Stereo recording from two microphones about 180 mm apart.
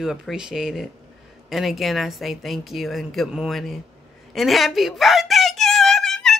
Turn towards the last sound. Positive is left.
turn(degrees=0)  # may be behind; listen again after turning